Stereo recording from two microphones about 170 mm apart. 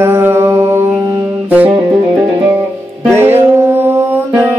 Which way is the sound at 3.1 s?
15° right (ahead or behind).